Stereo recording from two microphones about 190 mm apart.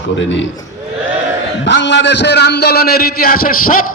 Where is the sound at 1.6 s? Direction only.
70° left (ahead or behind).